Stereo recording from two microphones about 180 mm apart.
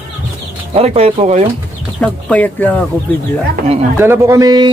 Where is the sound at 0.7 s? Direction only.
35° right (ahead or behind).